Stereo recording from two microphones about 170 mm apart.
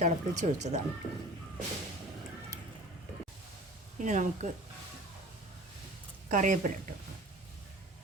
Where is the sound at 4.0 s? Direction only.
45° right (ahead or behind).